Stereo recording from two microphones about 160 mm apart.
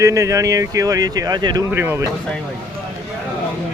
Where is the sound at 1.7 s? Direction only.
15° right (ahead or behind).